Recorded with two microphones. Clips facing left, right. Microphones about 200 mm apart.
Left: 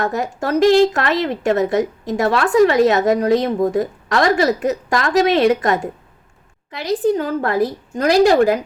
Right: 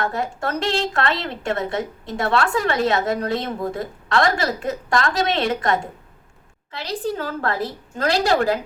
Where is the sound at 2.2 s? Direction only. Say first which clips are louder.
Left 7 dB; 20° left (ahead or behind).